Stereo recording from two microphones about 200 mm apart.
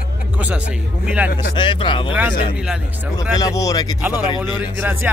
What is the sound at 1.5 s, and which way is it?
Speech, 25° left (ahead or behind).